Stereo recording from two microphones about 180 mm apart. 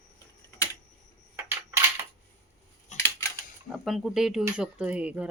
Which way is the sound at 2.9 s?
40° left (ahead or behind).